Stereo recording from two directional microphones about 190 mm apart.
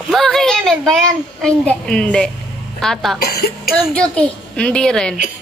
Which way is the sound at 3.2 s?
55° left (ahead or behind).